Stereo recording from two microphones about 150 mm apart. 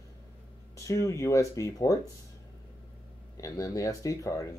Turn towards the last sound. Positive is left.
turn(degrees=20)  # may be behind; listen again after turning